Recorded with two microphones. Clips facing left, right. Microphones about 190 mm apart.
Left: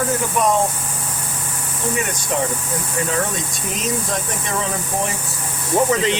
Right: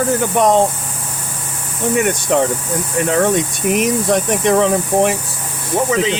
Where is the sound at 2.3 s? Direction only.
70° right (ahead or behind).